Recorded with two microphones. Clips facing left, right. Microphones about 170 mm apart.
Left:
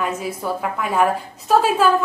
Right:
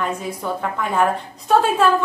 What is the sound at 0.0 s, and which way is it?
A woman's voice, 5° left (ahead or behind).